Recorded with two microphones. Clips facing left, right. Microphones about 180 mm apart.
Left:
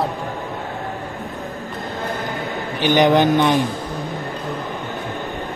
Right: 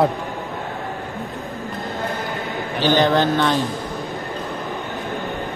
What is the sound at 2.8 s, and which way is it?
Speech, 15° left (ahead or behind).